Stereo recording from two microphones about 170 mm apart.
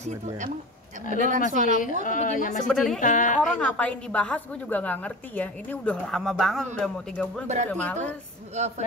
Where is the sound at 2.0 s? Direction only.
50° left (ahead or behind).